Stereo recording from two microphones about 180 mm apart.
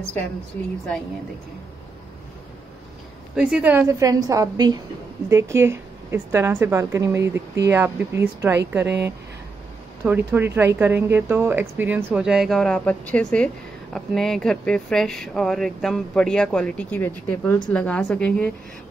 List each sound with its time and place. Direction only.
3.3 s speech: 5° right (ahead or behind)
10.0 s a woman's voice: 10° right (ahead or behind); by 18.5 s 5° left (ahead or behind)